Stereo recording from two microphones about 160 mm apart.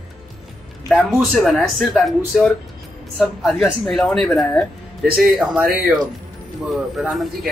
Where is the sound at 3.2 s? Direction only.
Centre (ahead or behind).